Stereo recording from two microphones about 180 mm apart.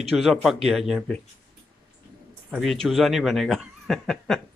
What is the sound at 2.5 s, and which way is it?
Speech, centre (ahead or behind).